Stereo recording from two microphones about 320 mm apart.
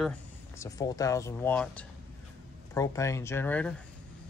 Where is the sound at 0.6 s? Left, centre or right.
Centre.